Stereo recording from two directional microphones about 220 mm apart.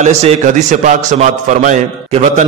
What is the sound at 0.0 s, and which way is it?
A man's voice, 30° right (ahead or behind).